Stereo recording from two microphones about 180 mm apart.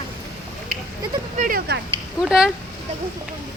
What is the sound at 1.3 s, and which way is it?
Speech, 45° right (ahead or behind).